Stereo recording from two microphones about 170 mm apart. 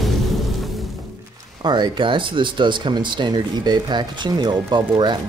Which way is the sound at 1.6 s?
25° right (ahead or behind).